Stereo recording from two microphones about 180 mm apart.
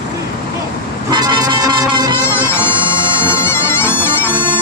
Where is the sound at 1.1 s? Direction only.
20° right (ahead or behind).